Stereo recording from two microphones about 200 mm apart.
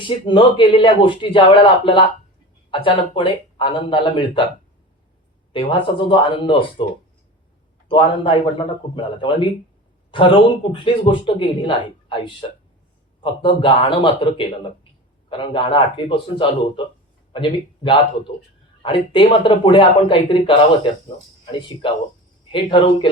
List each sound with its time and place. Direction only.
0.0 s a man's voice: 25° left (ahead or behind)
5.5 s a man's voice: 25° left (ahead or behind)
7.9 s a man's voice: 25° left (ahead or behind)
22.5 s a man's voice: 25° left (ahead or behind)